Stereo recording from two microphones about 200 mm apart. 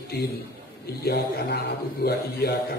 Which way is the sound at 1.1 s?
50° left (ahead or behind).